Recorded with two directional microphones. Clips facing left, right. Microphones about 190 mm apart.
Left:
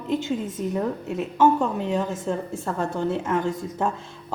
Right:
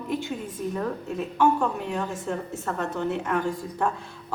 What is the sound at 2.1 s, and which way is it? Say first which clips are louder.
A woman's voice: left 3 dB; 30° left (ahead or behind).